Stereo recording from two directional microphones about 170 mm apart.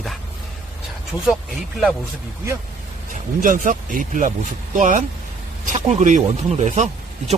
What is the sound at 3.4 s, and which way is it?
Speech, 50° right (ahead or behind).